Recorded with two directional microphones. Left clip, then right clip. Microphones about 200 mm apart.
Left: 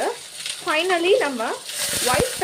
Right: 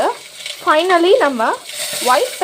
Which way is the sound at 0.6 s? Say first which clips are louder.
Right 8 dB; 15° right (ahead or behind).